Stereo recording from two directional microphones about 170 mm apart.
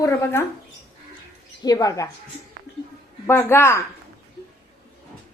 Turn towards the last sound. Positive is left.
turn(degrees=15)  # may be behind; listen again after turning